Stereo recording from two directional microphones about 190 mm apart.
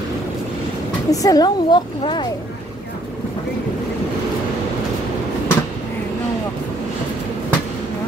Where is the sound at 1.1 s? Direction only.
20° left (ahead or behind).